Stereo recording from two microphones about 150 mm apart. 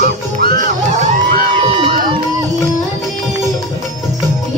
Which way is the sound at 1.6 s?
35° right (ahead or behind).